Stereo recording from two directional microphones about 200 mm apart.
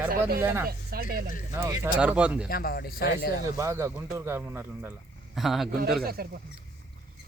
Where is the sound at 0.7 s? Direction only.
50° right (ahead or behind).